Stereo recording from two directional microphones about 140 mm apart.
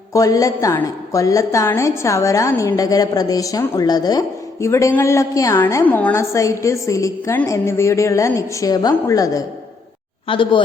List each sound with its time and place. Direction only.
0.1 s a woman's voice: 25° left (ahead or behind)
10.2 s speech: 35° left (ahead or behind)